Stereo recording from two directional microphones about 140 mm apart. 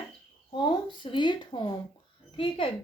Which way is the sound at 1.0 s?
35° left (ahead or behind).